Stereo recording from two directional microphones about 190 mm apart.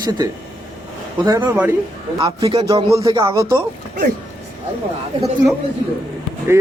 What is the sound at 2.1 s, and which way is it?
Speech, 25° right (ahead or behind).